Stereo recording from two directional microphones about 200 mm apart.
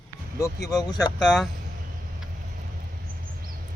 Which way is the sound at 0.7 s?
20° left (ahead or behind).